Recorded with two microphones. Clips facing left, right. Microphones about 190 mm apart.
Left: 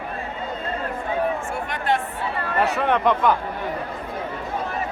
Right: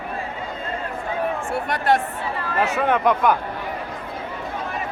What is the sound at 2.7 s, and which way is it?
Speech, 5° right (ahead or behind).